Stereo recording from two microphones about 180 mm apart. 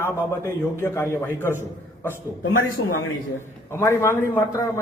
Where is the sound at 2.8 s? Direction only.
90° left.